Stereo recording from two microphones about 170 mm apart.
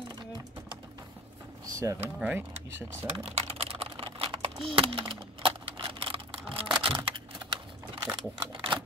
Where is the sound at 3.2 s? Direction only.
35° right (ahead or behind).